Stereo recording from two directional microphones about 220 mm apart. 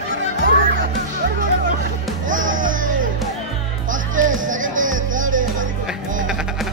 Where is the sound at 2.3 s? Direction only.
60° right (ahead or behind).